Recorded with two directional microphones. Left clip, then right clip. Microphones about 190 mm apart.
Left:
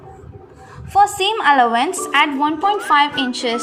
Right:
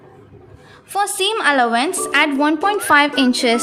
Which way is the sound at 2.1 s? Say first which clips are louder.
Even; 35° right (ahead or behind).